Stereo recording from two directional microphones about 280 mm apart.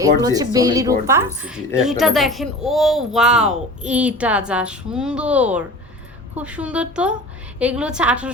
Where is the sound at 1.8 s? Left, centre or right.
Centre.